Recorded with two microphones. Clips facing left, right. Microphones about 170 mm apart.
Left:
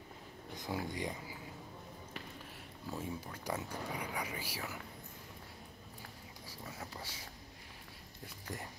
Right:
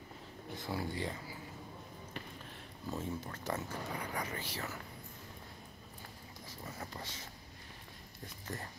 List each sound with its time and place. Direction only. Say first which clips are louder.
0.6 s speech: even; 15° left (ahead or behind)
2.9 s speech: right 2 dB; 10° left (ahead or behind)
6.4 s speech: right 1 dB; 5° left (ahead or behind)
8.5 s speech: right 1 dB; 15° left (ahead or behind)